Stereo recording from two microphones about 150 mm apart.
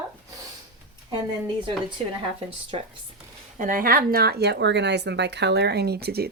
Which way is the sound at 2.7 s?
40° right (ahead or behind).